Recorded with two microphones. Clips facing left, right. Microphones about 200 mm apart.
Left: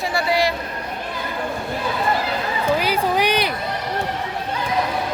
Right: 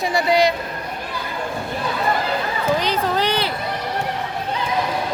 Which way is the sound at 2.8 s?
10° left (ahead or behind).